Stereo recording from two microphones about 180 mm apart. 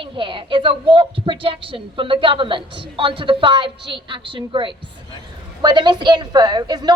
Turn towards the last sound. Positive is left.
turn(degrees=-20)  # may be behind; listen again after turning